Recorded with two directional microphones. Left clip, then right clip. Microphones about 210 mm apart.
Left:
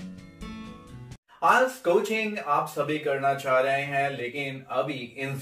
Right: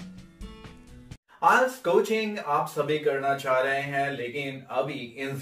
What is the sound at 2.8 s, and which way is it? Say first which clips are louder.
Speech: even; centre (ahead or behind).